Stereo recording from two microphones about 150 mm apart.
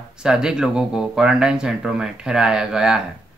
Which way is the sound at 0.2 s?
5° right (ahead or behind).